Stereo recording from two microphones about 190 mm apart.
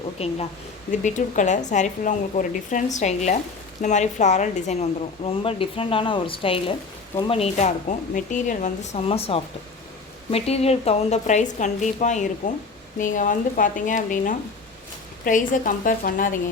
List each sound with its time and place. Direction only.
0.2 s a woman's voice: 30° left (ahead or behind)